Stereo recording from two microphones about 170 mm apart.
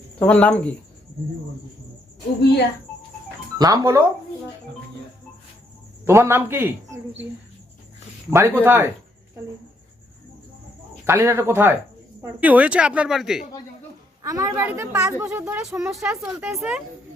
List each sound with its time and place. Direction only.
0.2 s speech: 5° left (ahead or behind)
3.6 s speech: 20° right (ahead or behind)
6.1 s a woman's voice: 15° right (ahead or behind)
8.3 s a woman's voice: 15° right (ahead or behind)
11.0 s a woman's voice: 15° right (ahead or behind)
14.2 s a woman's voice: 20° right (ahead or behind); by 16.8 s 5° right (ahead or behind)